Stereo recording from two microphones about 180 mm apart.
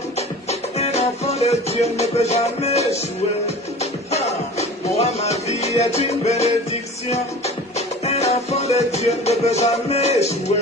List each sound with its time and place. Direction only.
0.5 s music: 35° left (ahead or behind)